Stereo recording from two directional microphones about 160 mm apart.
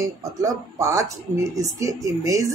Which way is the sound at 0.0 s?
20° right (ahead or behind).